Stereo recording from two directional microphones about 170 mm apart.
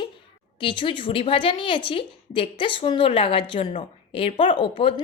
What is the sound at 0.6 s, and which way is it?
A woman's voice, 30° left (ahead or behind).